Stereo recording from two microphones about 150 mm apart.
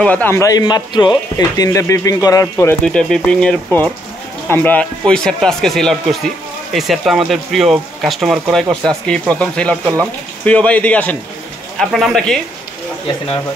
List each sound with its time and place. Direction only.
0.0 s speech: 10° left (ahead or behind)
2.8 s speech: 5° left (ahead or behind)